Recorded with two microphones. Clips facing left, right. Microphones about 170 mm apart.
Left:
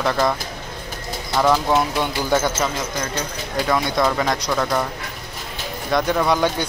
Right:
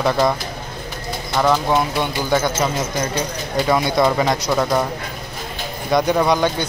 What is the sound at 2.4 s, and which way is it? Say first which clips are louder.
Speech: right 2 dB; 10° right (ahead or behind).